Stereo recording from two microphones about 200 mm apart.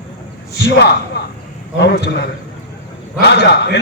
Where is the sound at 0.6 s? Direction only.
55° left (ahead or behind).